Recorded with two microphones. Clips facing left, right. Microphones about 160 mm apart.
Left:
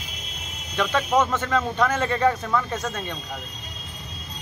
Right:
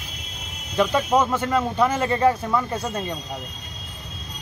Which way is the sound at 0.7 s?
10° right (ahead or behind).